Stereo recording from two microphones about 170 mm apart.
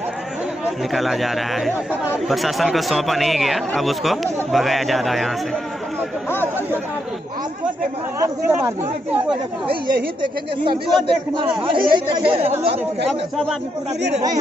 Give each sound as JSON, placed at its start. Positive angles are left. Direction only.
{"t": 0.7, "sound": "speech", "side_deg": 0}
{"t": 8.5, "sound": "speech", "side_deg": -15}
{"t": 10.6, "sound": "speech", "side_deg": -30}